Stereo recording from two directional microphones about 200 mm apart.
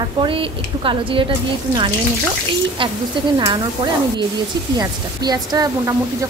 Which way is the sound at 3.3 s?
25° right (ahead or behind).